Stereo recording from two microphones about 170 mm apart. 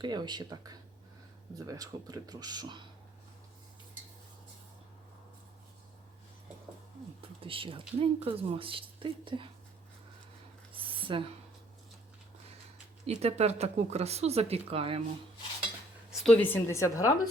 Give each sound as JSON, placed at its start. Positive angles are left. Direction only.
{"t": 0.0, "sound": "speech", "side_deg": -25}
{"t": 7.2, "sound": "speech", "side_deg": -30}
{"t": 10.7, "sound": "a sound", "side_deg": -30}
{"t": 13.1, "sound": "speech", "side_deg": -40}
{"t": 16.0, "sound": "speech", "side_deg": 5}